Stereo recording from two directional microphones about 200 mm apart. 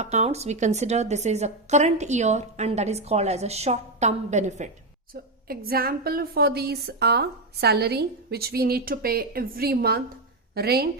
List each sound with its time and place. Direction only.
0.0 s a woman's voice: 35° right (ahead or behind)
5.1 s a woman's voice: 50° right (ahead or behind)